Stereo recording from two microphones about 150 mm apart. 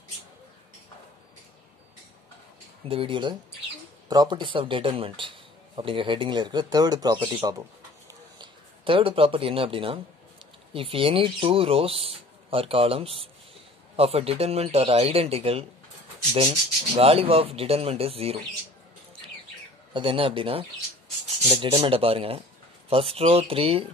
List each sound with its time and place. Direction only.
2.9 s speech: 35° right (ahead or behind)
8.1 s a sound: 30° right (ahead or behind)
10.7 s speech: 40° right (ahead or behind)
16.9 s speech: 40° right (ahead or behind)
19.9 s speech: 35° right (ahead or behind)